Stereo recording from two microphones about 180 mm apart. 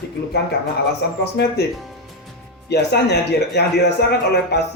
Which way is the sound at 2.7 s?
65° left (ahead or behind).